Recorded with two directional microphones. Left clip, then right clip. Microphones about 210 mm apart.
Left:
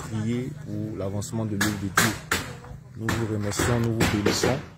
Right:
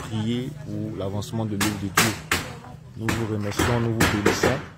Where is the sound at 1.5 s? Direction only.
50° right (ahead or behind).